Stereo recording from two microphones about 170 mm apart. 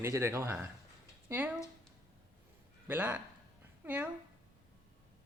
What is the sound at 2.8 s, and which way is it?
Speech, 10° right (ahead or behind).